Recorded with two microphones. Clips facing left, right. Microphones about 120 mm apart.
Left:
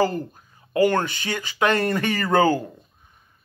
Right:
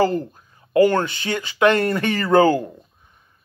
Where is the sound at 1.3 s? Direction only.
35° left (ahead or behind).